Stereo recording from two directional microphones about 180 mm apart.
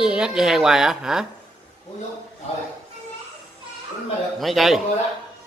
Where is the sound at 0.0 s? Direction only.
5° right (ahead or behind).